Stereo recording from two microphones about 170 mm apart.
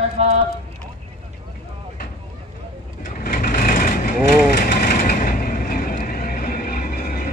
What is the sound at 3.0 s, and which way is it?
Vehicle, 55° left (ahead or behind).